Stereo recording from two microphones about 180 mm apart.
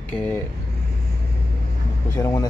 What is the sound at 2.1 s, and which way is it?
Speech, 15° left (ahead or behind).